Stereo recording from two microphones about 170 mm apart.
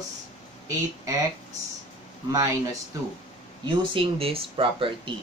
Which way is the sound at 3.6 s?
30° right (ahead or behind).